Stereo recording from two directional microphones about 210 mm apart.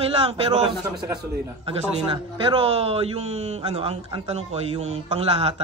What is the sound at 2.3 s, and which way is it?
A man's voice, 25° right (ahead or behind).